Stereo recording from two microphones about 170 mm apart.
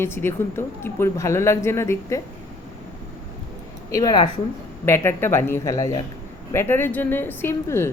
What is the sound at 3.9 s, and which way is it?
Speech, 20° left (ahead or behind).